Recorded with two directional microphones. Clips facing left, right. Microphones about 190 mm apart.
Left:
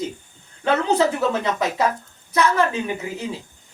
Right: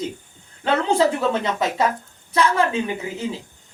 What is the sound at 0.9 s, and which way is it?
Speech, 30° right (ahead or behind).